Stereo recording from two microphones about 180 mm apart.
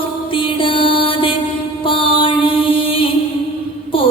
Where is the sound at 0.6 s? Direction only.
30° left (ahead or behind).